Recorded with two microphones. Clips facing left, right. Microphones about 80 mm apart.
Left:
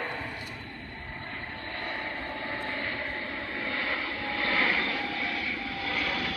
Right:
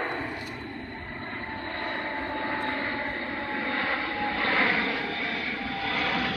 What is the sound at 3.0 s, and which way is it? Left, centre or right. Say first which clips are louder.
Vehicle: right 3 dB; right.